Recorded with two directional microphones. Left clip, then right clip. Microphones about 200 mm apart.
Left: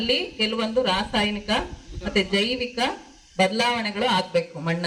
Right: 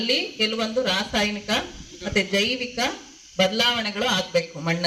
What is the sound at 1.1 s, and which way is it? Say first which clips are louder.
Speech: even; 50° left (ahead or behind).